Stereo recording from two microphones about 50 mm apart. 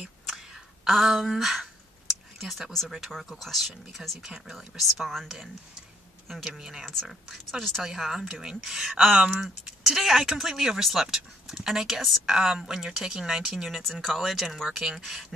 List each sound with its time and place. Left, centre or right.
0.3 s a sound: centre
3.3 s speech: centre
4.2 s speech: centre
6.2 s speech: centre
6.9 s speech: centre